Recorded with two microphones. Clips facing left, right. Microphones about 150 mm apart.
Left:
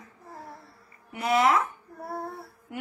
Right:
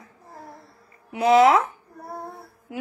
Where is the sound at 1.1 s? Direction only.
90° right.